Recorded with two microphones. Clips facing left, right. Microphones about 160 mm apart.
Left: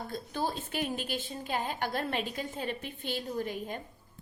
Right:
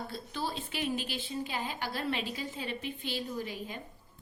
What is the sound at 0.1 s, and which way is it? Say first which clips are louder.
A woman's voice: left 3 dB; 50° left (ahead or behind).